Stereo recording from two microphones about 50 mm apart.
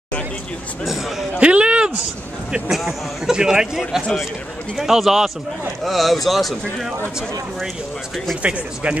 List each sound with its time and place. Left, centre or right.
1.4 s a sound: right
3.3 s a man's voice: centre
8.4 s speech: right